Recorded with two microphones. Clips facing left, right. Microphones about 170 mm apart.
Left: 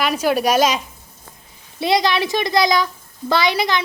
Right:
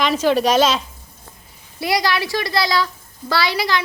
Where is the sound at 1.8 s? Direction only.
20° left (ahead or behind).